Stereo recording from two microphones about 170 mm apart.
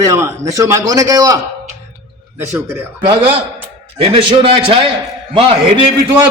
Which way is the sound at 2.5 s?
15° right (ahead or behind).